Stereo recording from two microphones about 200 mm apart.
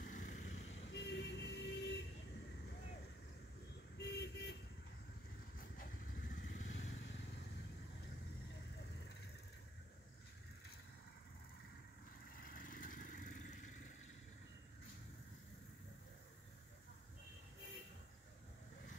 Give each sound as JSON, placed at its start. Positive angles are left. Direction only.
{"t": 0.0, "sound": "vehicle", "side_deg": 40}
{"t": 0.7, "sound": "vehicle", "side_deg": 60}
{"t": 4.0, "sound": "vehicle", "side_deg": 55}
{"t": 5.6, "sound": "vehicle", "side_deg": 45}
{"t": 6.7, "sound": "vehicle", "side_deg": 60}
{"t": 12.3, "sound": "vehicle", "side_deg": 45}